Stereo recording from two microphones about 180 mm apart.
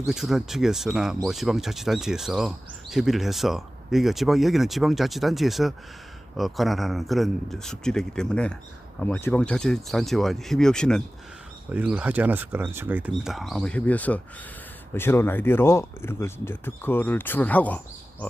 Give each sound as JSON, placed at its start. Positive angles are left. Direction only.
{"t": 0.1, "sound": "speech", "side_deg": 0}
{"t": 11.7, "sound": "speech", "side_deg": -10}